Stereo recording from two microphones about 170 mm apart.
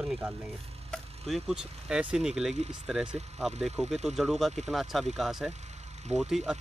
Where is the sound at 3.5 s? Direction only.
40° right (ahead or behind).